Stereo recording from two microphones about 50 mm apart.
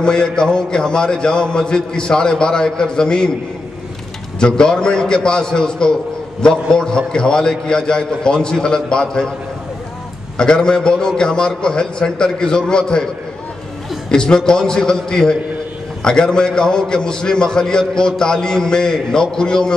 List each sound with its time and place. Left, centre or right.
0.0 s a man's voice: centre
4.4 s a man's voice: centre
10.3 s a man's voice: centre